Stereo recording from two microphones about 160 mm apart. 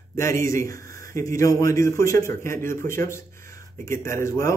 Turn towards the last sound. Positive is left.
turn(degrees=20)  # may be behind; listen again after turning